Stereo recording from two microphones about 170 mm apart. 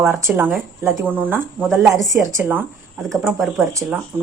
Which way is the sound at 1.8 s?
20° right (ahead or behind).